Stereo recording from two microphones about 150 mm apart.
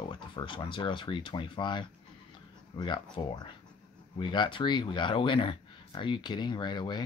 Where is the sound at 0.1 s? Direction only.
35° left (ahead or behind).